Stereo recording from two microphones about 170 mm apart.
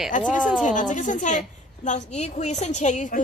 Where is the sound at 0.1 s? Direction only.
50° left (ahead or behind).